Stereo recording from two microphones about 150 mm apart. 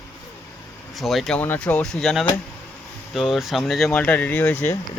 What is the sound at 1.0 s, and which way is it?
Speech, centre (ahead or behind).